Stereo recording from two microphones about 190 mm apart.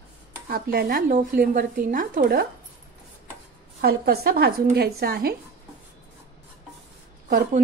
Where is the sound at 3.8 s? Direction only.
55° right (ahead or behind).